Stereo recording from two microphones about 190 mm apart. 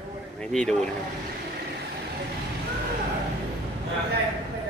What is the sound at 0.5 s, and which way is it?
Speech, 5° left (ahead or behind).